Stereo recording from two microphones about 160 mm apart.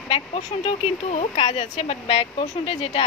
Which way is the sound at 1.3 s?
30° left (ahead or behind).